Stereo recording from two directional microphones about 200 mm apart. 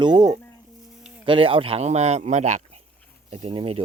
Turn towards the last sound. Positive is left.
turn(degrees=-30)  # may be behind; listen again after turning